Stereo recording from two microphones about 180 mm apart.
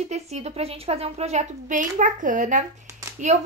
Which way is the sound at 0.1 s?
35° right (ahead or behind).